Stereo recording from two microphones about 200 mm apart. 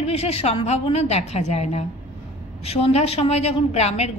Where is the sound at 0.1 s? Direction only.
30° left (ahead or behind).